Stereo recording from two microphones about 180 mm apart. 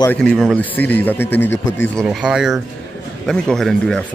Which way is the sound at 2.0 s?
5° right (ahead or behind).